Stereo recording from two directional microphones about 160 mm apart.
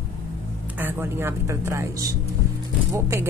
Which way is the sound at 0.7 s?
15° right (ahead or behind).